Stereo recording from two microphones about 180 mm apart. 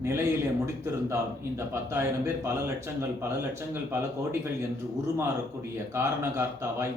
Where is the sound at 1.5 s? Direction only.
15° right (ahead or behind).